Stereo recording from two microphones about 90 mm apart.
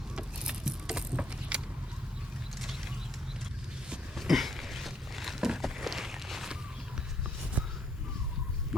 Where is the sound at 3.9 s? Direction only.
Centre (ahead or behind).